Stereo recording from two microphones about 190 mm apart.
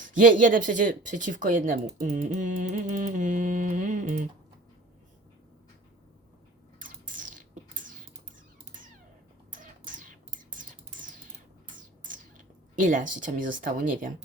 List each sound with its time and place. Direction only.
0.1 s speech: 45° right (ahead or behind)
2.1 s music: 40° right (ahead or behind)
6.7 s bird: 45° right (ahead or behind)
9.5 s whispering: 45° right (ahead or behind)
12.0 s speech: 45° right (ahead or behind)